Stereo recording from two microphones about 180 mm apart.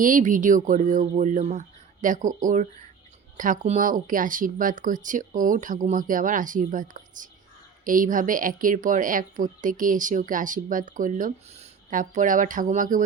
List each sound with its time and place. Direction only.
0.0 s speech: 45° right (ahead or behind)